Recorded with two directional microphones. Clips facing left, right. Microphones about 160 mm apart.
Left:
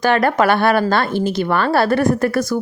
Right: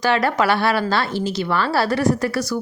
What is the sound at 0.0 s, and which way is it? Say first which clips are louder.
A woman's voice: left 4 dB; 50° left (ahead or behind).